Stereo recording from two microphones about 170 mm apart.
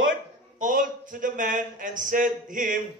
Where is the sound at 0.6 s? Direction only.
50° right (ahead or behind).